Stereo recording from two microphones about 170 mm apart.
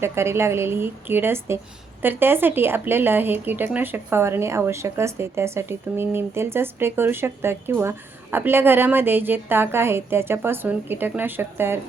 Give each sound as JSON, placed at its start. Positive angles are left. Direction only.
{"t": 0.0, "sound": "speech", "side_deg": -15}